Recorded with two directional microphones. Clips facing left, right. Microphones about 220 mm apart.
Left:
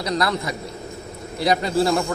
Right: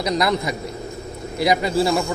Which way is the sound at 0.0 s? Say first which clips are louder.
Right 3 dB; 15° right (ahead or behind).